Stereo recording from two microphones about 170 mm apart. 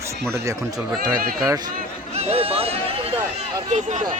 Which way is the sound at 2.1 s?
40° right (ahead or behind).